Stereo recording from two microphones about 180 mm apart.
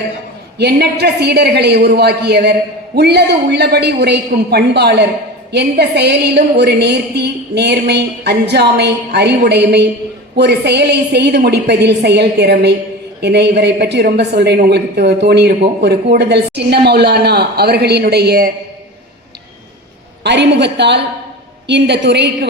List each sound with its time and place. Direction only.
0.6 s a woman's voice: 65° right (ahead or behind)
20.2 s a woman's voice: 75° right (ahead or behind)